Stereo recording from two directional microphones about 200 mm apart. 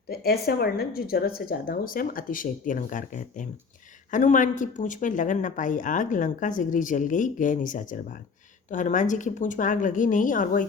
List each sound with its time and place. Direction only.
0.1 s a woman's voice: 50° left (ahead or behind)